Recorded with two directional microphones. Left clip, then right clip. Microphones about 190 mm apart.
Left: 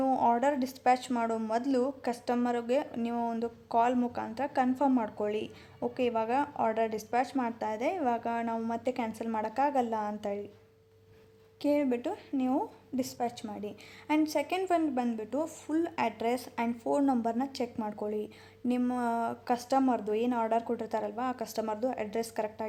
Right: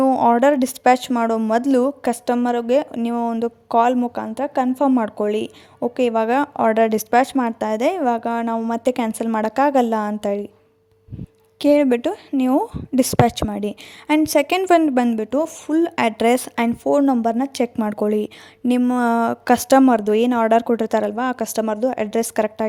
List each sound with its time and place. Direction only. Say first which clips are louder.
0.0 s speech: right 12 dB; 40° right (ahead or behind)
11.6 s speech: right 14 dB; 50° right (ahead or behind)
18.7 s speech: right 13 dB; 40° right (ahead or behind)
19.0 s speech: right 15 dB; 50° right (ahead or behind)